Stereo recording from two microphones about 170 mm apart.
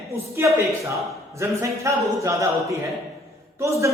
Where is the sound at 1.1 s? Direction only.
15° right (ahead or behind).